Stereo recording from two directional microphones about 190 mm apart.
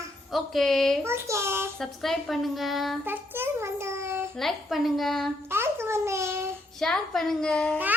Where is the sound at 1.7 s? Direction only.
Centre (ahead or behind).